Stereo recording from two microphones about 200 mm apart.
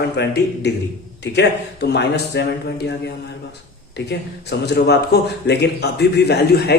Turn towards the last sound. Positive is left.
turn(degrees=55)  # may be behind; listen again after turning